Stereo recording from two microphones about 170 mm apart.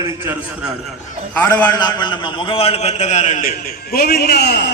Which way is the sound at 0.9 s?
10° left (ahead or behind).